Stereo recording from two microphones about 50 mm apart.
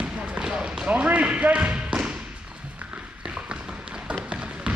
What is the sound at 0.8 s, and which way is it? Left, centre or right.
Basketball bounce, right.